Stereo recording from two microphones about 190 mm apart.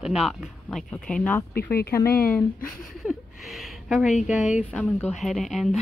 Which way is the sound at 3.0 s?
Centre (ahead or behind).